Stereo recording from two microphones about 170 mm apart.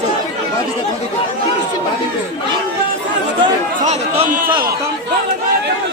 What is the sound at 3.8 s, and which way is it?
Speech, 45° right (ahead or behind).